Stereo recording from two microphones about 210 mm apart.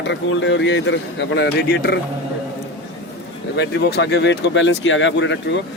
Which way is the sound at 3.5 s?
55° left (ahead or behind).